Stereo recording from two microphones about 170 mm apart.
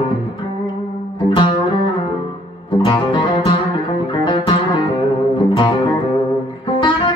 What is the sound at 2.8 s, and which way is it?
Music, 25° left (ahead or behind).